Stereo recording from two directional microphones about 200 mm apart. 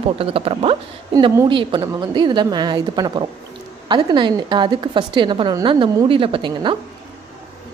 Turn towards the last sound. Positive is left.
turn(degrees=-25)  # may be behind; listen again after turning